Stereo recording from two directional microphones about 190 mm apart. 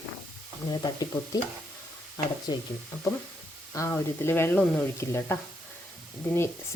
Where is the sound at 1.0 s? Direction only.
20° left (ahead or behind).